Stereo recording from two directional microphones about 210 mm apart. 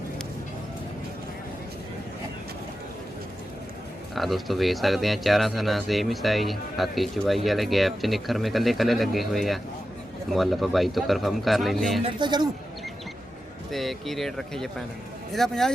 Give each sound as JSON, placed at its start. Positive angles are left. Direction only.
{"t": 4.1, "sound": "speech", "side_deg": 0}
{"t": 12.0, "sound": "a man's voice", "side_deg": -20}
{"t": 13.7, "sound": "speech", "side_deg": 0}